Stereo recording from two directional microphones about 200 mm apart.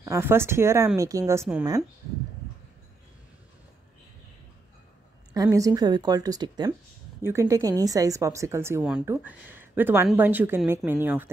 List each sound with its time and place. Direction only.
0.0 s speech: 15° right (ahead or behind)
5.3 s speech: 15° right (ahead or behind)